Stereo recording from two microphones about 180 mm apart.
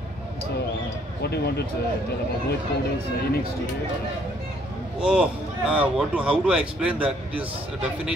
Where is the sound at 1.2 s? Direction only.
65° left (ahead or behind).